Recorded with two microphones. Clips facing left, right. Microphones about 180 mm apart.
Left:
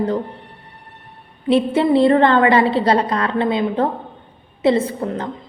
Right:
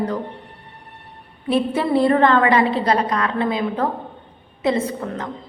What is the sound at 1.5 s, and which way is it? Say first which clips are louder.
A woman's voice: left 4 dB; 25° left (ahead or behind).